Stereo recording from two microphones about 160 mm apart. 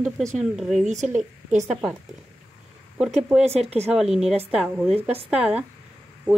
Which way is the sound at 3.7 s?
40° right (ahead or behind).